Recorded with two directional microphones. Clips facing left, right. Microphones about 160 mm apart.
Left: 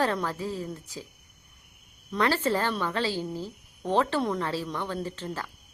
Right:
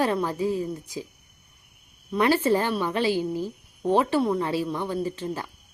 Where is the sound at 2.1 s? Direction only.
15° right (ahead or behind).